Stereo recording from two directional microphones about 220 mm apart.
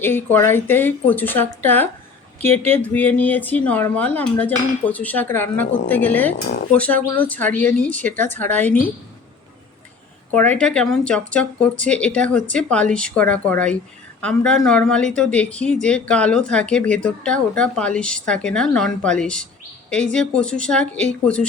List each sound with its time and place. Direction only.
0.0 s speech: 10° left (ahead or behind)
10.3 s speech: 10° left (ahead or behind)